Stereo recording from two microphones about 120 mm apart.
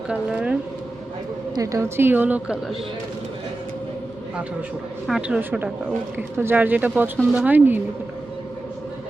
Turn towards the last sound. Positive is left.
turn(degrees=-15)  # may be behind; listen again after turning